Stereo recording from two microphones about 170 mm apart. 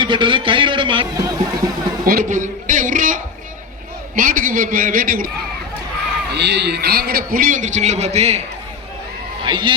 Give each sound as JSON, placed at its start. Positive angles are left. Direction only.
{"t": 0.0, "sound": "a man's voice", "side_deg": -30}
{"t": 2.0, "sound": "a sound", "side_deg": -55}
{"t": 4.1, "sound": "a man's voice", "side_deg": -50}
{"t": 6.3, "sound": "a man's voice", "side_deg": -80}
{"t": 9.4, "sound": "a man's voice", "side_deg": -30}